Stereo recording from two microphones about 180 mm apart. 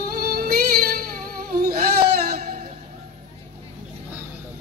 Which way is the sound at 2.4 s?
45° right (ahead or behind).